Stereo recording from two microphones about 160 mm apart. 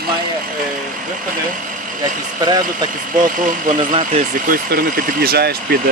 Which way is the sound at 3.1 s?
55° right (ahead or behind).